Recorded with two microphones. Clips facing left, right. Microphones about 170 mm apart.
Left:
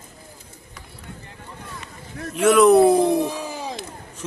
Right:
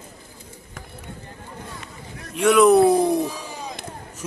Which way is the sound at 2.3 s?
Centre (ahead or behind).